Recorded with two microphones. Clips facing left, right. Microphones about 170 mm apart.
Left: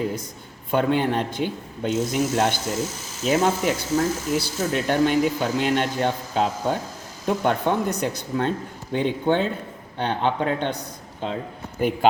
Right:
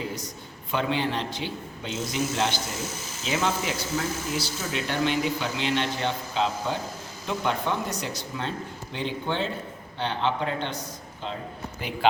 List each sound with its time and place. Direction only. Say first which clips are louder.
0.0 s a man's voice: left 6 dB; 55° left (ahead or behind)
11.8 s speech: left 13 dB; 50° left (ahead or behind)